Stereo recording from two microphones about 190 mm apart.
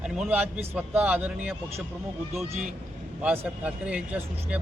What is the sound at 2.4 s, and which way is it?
Speech, 40° right (ahead or behind).